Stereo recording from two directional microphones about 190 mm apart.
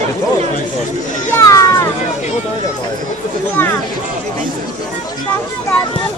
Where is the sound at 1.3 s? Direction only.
15° left (ahead or behind).